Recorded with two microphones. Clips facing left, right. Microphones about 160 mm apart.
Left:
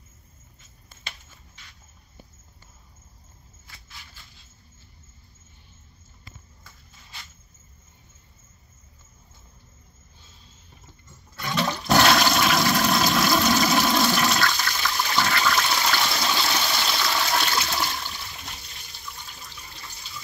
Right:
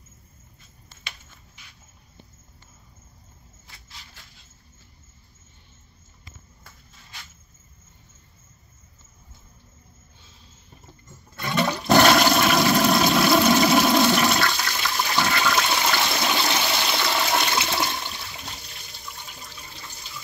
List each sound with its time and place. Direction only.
11.4 s toilet flush: 10° right (ahead or behind)